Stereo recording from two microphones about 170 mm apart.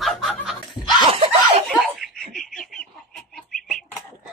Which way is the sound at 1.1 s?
30° right (ahead or behind).